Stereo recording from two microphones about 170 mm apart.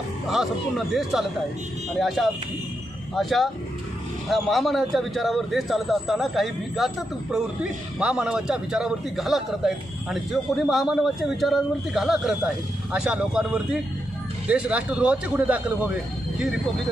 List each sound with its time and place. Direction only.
0.3 s a man's voice: centre (ahead or behind)